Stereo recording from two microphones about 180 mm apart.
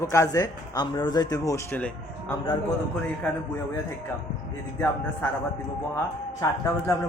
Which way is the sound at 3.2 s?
5° left (ahead or behind).